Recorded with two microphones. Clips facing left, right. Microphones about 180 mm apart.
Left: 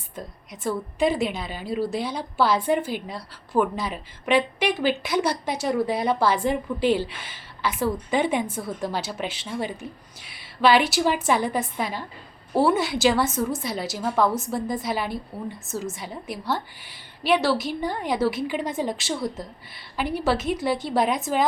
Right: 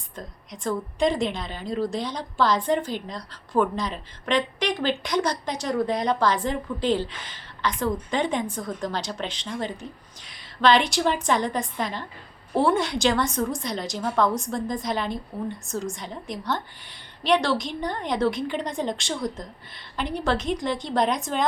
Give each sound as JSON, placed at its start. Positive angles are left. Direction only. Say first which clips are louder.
{"t": 0.2, "sound": "a woman's voice", "louder": "left 1 dB", "side_deg": 5}